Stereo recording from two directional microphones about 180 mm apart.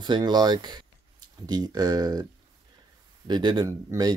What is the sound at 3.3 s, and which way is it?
Speech, 25° right (ahead or behind).